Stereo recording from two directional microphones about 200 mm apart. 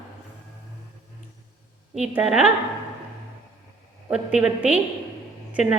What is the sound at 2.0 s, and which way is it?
Speech, 5° right (ahead or behind).